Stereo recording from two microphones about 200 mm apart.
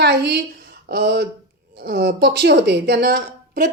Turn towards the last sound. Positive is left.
turn(degrees=-50)  # may be behind; listen again after turning